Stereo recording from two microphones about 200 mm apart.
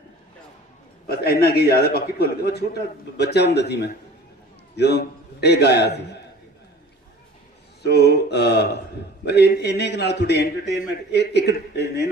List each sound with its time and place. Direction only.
1.0 s a man's voice: 50° left (ahead or behind)
7.8 s a man's voice: 55° left (ahead or behind)